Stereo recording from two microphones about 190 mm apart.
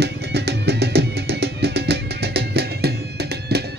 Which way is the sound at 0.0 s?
60° right (ahead or behind).